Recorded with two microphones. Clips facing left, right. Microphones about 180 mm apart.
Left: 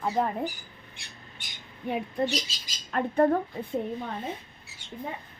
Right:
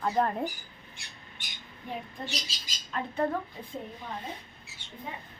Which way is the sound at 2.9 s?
55° left (ahead or behind).